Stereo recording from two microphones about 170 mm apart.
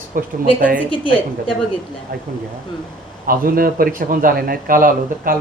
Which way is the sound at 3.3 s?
60° right (ahead or behind).